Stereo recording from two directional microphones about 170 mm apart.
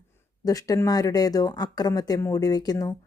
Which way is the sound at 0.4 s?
20° left (ahead or behind).